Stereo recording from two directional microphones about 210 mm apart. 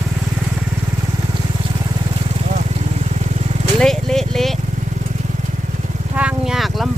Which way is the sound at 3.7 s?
Centre (ahead or behind).